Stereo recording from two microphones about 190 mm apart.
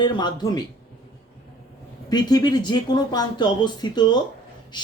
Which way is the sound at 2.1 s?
20° left (ahead or behind).